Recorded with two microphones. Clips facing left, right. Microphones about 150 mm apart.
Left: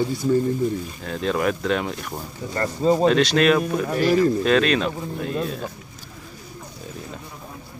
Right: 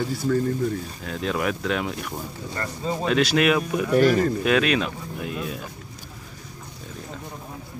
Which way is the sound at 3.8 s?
35° left (ahead or behind).